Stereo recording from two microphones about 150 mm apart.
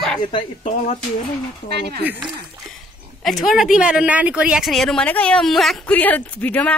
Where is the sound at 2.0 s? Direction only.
10° right (ahead or behind).